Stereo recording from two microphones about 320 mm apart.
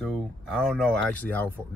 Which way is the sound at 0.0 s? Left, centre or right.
Centre.